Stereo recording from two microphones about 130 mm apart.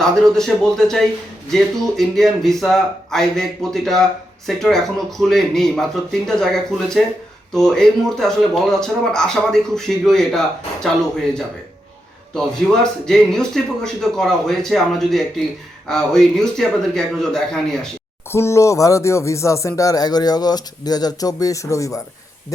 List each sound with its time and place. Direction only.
0.0 s speech: 5° left (ahead or behind)
18.3 s speech: 20° left (ahead or behind)